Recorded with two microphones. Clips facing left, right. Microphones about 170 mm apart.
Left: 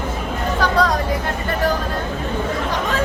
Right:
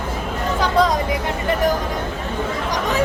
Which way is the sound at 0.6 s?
20° right (ahead or behind).